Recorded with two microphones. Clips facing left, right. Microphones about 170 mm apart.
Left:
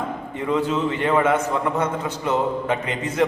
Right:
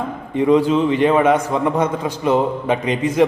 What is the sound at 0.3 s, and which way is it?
A man's voice, 15° right (ahead or behind).